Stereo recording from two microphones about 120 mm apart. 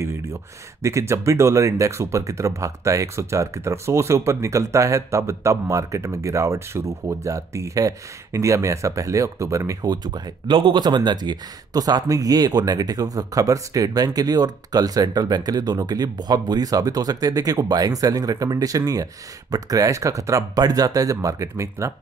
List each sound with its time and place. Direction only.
0.8 s speech: 25° right (ahead or behind)